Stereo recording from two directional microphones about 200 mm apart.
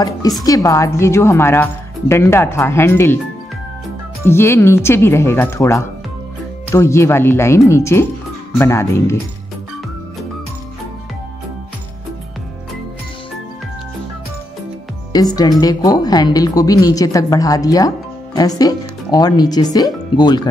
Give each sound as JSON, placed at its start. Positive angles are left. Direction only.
{"t": 0.4, "sound": "a woman's voice", "side_deg": 20}
{"t": 4.2, "sound": "a woman's voice", "side_deg": 10}
{"t": 15.1, "sound": "a woman's voice", "side_deg": 20}